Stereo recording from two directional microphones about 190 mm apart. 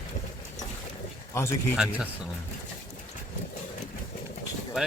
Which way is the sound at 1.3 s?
15° left (ahead or behind).